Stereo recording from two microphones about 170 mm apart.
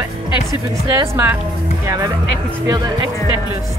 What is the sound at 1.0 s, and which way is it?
Speech, 15° right (ahead or behind).